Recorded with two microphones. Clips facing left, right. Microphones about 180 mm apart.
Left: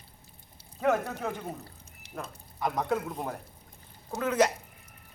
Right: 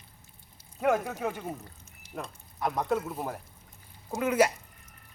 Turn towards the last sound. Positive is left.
turn(degrees=-10)  # may be behind; listen again after turning